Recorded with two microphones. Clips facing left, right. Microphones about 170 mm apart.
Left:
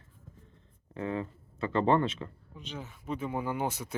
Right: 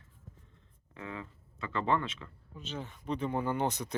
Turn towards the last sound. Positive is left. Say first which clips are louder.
# right 1 dB
turn(degrees=5)  # may be behind; listen again after turning